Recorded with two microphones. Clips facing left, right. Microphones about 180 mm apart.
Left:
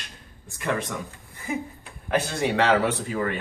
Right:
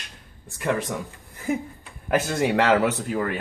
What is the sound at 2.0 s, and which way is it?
Speech, 50° right (ahead or behind).